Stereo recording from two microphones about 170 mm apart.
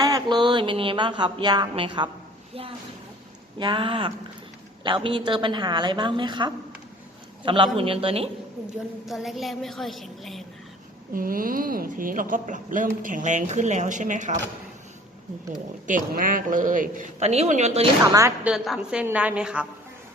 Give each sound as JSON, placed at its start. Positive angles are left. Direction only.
{"t": 0.0, "sound": "speech", "side_deg": -25}
{"t": 3.6, "sound": "a man's voice", "side_deg": -30}
{"t": 9.0, "sound": "a woman's voice", "side_deg": 0}
{"t": 11.1, "sound": "a woman's voice", "side_deg": -55}
{"t": 15.9, "sound": "a woman's voice", "side_deg": -50}
{"t": 18.1, "sound": "a woman's voice", "side_deg": -20}
{"t": 18.4, "sound": "a woman's voice", "side_deg": 0}